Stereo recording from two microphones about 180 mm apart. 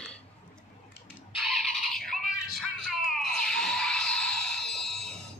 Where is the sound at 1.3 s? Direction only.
Centre (ahead or behind).